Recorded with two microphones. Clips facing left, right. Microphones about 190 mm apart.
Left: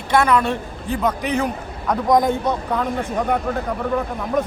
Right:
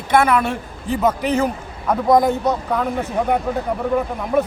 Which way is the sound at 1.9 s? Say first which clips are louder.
Right 2 dB; 5° right (ahead or behind).